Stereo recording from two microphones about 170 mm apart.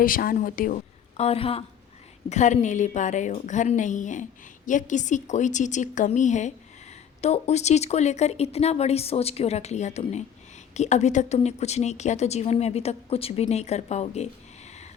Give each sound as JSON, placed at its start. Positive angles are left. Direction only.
{"t": 0.0, "sound": "a woman's voice", "side_deg": 55}